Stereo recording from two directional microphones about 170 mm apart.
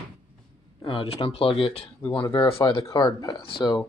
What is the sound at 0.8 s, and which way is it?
Speech, 35° left (ahead or behind).